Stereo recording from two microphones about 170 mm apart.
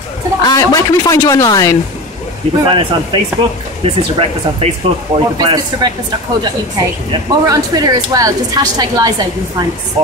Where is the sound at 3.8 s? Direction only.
35° right (ahead or behind).